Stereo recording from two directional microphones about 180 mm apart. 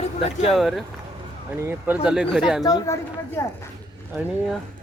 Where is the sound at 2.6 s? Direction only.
20° left (ahead or behind).